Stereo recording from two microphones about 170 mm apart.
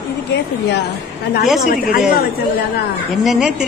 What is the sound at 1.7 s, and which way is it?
Speech, 55° left (ahead or behind).